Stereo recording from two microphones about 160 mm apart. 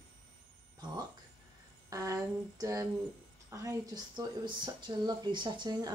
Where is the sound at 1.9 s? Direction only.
20° right (ahead or behind).